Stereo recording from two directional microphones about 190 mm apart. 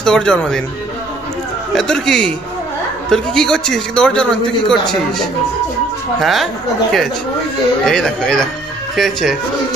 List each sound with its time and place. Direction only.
0.0 s a man's voice: 5° left (ahead or behind)
1.7 s a man's voice: centre (ahead or behind)